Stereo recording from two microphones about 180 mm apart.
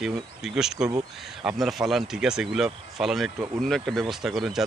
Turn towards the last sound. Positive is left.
turn(degrees=0)  # may be behind; listen again after turning